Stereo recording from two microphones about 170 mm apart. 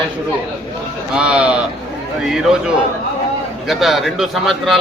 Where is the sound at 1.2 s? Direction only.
5° right (ahead or behind).